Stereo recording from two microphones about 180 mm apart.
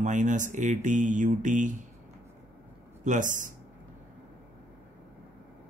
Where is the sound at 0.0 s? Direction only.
45° right (ahead or behind).